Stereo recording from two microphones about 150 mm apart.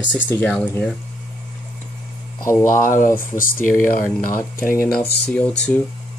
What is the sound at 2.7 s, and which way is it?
Speech, 60° left (ahead or behind).